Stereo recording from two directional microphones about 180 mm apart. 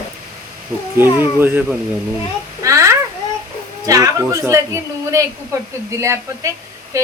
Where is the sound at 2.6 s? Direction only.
15° right (ahead or behind).